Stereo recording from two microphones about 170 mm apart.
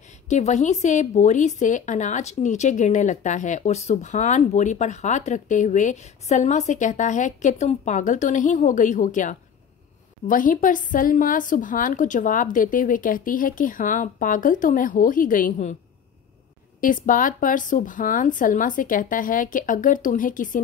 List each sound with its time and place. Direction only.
0.3 s a woman's voice: 45° left (ahead or behind)
16.8 s a woman's voice: 50° left (ahead or behind)